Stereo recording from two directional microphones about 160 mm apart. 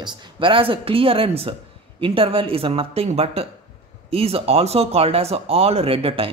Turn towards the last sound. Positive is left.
turn(degrees=-35)  # may be behind; listen again after turning